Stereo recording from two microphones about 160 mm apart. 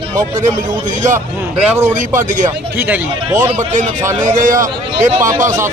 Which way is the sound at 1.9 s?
50° right (ahead or behind).